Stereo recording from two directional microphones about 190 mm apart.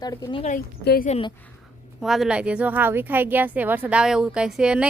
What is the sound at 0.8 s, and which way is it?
Speech, 55° left (ahead or behind).